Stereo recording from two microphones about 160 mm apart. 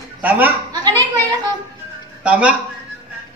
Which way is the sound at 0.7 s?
25° right (ahead or behind).